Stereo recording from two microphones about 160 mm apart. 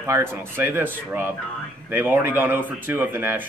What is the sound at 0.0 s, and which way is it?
A man's voice, 15° right (ahead or behind).